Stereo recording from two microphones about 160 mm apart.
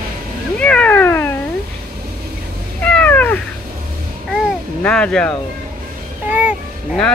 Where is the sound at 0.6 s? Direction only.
5° left (ahead or behind).